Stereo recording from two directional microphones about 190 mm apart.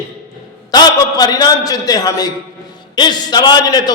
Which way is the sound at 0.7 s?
20° left (ahead or behind).